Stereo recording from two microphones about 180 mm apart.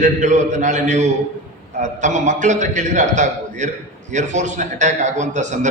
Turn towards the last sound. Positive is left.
turn(degrees=-40)  # may be behind; listen again after turning